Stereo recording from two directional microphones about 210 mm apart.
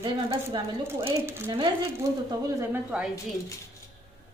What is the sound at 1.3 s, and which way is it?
Speech, 10° right (ahead or behind).